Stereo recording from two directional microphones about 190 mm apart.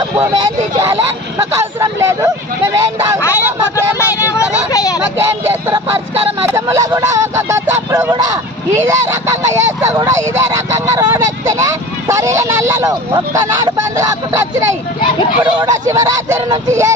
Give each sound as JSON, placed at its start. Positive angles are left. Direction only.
{"t": 1.5, "sound": "speech", "side_deg": -15}
{"t": 3.2, "sound": "vehicle", "side_deg": 15}
{"t": 5.0, "sound": "speech", "side_deg": -15}